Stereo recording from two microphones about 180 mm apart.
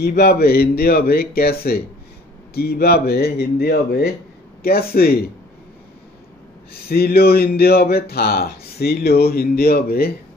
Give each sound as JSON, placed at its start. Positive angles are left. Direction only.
{"t": 0.0, "sound": "speech", "side_deg": 60}
{"t": 6.7, "sound": "speech", "side_deg": 60}